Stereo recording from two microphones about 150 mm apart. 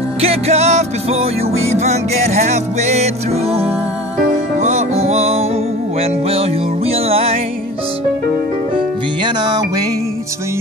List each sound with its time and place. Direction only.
0.2 s music: 45° right (ahead or behind)
8.7 s music: 30° right (ahead or behind)